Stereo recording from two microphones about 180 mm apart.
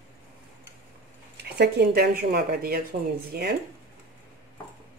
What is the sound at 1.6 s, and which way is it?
Speech, 65° right (ahead or behind).